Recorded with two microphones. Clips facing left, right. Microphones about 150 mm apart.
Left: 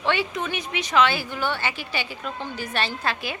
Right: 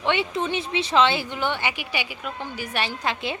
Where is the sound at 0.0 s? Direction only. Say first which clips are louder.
Right 1 dB; 20° right (ahead or behind).